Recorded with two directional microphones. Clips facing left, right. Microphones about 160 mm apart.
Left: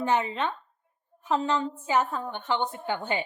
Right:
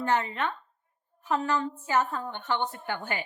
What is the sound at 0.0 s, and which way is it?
A woman's voice, 15° left (ahead or behind).